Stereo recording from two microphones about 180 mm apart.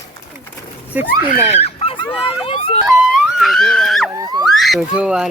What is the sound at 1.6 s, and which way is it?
Dog, 30° left (ahead or behind).